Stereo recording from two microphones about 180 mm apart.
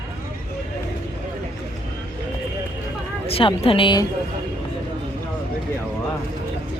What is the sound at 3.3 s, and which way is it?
Speech, 30° left (ahead or behind).